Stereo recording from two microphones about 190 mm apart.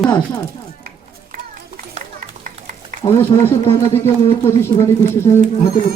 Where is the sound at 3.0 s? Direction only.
25° left (ahead or behind).